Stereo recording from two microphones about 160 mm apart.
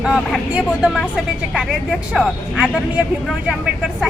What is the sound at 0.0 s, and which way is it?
Speech, 5° right (ahead or behind).